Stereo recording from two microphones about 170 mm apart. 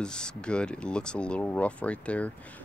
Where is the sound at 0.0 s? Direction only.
5° left (ahead or behind).